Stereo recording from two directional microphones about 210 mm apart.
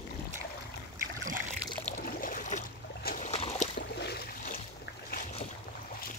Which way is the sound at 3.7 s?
50° left (ahead or behind).